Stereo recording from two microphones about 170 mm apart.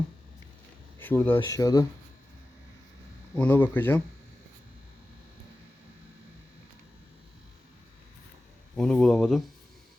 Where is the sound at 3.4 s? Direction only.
10° left (ahead or behind).